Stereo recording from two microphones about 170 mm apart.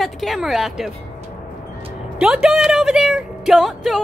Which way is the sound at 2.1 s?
5° right (ahead or behind).